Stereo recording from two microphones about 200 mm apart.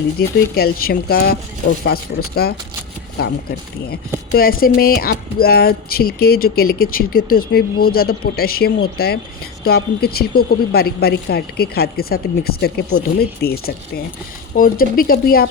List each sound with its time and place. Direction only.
0.2 s speech: 50° left (ahead or behind)
4.4 s speech: 45° left (ahead or behind)